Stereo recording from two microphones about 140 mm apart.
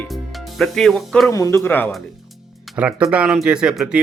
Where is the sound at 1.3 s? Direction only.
20° left (ahead or behind).